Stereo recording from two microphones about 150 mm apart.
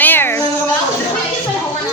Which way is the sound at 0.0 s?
15° left (ahead or behind).